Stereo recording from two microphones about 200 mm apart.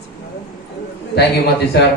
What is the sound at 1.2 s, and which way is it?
Speech, 55° left (ahead or behind).